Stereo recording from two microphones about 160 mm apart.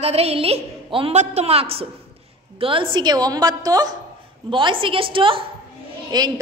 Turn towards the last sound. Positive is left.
turn(degrees=-25)  # may be behind; listen again after turning